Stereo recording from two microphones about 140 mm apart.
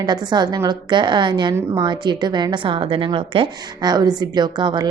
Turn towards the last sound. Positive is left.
turn(degrees=-30)  # may be behind; listen again after turning